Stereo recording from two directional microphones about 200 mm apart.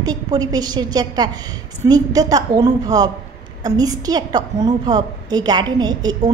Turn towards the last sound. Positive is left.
turn(degrees=-20)  # may be behind; listen again after turning